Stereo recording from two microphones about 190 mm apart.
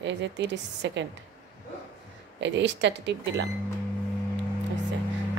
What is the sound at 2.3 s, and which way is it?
A woman's voice, 70° right (ahead or behind).